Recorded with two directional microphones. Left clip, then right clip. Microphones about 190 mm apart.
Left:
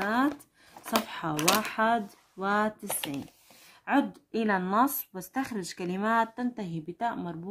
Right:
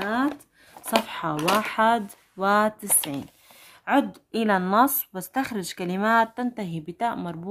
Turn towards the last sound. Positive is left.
turn(degrees=-25)  # may be behind; listen again after turning